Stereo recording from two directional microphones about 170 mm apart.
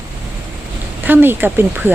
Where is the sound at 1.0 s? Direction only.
10° right (ahead or behind).